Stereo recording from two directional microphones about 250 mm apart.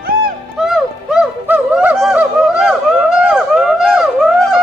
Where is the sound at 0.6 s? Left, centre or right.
Centre.